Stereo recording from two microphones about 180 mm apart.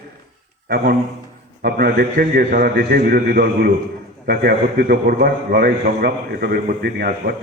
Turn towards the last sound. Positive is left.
turn(degrees=-55)  # may be behind; listen again after turning